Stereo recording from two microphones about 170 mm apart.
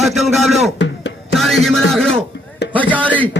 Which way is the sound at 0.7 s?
90° left.